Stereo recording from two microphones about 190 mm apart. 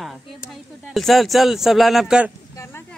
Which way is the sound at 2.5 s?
15° left (ahead or behind).